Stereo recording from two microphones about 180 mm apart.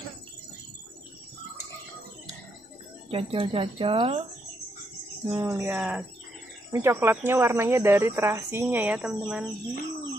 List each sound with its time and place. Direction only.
3.1 s speech: 30° right (ahead or behind)
5.3 s speech: 15° right (ahead or behind)